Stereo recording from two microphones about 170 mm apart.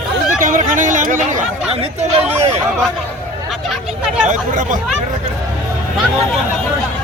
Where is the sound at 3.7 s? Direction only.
5° right (ahead or behind).